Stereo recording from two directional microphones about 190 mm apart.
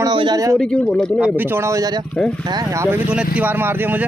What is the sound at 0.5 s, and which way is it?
Speech, 5° left (ahead or behind).